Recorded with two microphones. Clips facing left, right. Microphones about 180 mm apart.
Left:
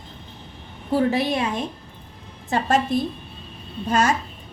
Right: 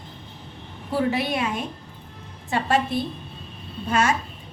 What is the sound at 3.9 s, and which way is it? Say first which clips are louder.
Speech: left 2 dB; 35° left (ahead or behind).